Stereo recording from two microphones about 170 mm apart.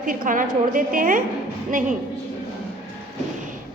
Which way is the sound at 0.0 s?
50° right (ahead or behind).